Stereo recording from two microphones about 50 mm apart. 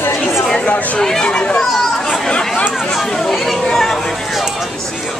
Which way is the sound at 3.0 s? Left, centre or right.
Centre.